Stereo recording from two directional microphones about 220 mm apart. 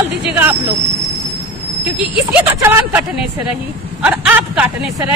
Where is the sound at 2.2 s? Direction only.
10° right (ahead or behind).